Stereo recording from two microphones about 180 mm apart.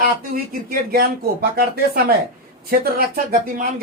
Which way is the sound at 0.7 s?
55° right (ahead or behind).